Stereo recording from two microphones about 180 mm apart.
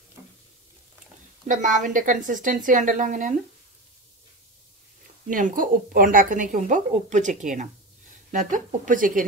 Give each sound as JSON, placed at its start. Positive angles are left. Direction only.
{"t": 1.5, "sound": "speech", "side_deg": -45}
{"t": 5.3, "sound": "speech", "side_deg": -50}